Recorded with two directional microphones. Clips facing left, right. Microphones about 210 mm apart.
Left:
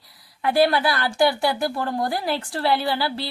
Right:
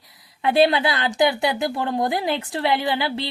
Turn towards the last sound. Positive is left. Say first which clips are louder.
# right 1 dB
turn(degrees=-20)  # may be behind; listen again after turning